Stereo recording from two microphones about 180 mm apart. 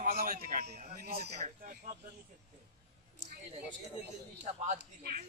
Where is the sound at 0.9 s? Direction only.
55° right (ahead or behind).